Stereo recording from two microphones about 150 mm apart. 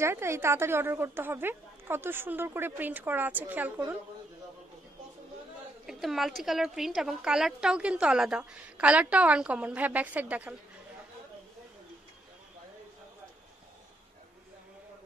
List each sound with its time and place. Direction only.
0.0 s a woman's voice: 15° right (ahead or behind)
5.9 s a woman's voice: centre (ahead or behind)